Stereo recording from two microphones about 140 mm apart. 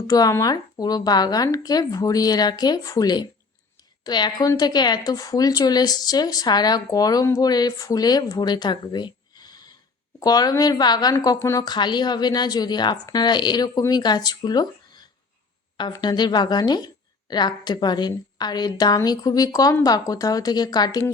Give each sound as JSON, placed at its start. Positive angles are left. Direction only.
{"t": 0.1, "sound": "a woman's voice", "side_deg": 25}
{"t": 11.6, "sound": "a woman's voice", "side_deg": 30}